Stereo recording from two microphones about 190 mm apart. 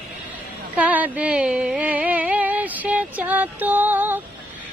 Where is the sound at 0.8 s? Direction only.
10° right (ahead or behind).